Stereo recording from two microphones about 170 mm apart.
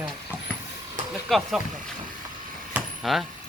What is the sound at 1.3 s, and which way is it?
Speech, centre (ahead or behind).